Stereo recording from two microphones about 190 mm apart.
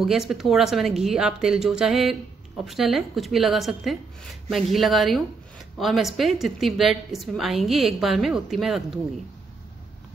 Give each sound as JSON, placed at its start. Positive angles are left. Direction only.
{"t": 0.0, "sound": "a woman's voice", "side_deg": 0}